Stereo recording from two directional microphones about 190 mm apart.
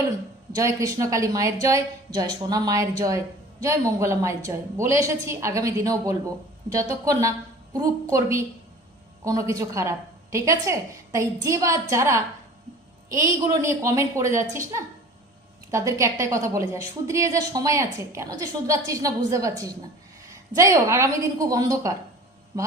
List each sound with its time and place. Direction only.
0.5 s a woman's voice: 15° right (ahead or behind)